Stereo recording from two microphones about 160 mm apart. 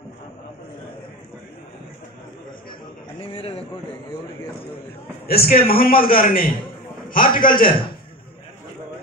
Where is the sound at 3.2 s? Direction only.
35° left (ahead or behind).